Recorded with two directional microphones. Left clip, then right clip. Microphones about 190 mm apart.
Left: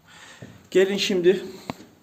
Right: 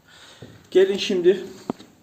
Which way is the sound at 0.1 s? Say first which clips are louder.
Even; centre (ahead or behind).